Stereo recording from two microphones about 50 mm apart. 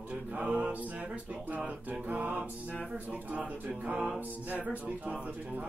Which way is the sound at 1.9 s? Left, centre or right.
Right.